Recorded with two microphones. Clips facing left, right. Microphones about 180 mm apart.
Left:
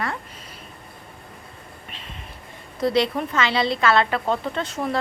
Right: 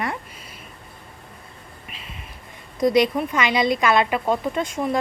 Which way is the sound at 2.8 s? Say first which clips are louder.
Right 3 dB; 15° right (ahead or behind).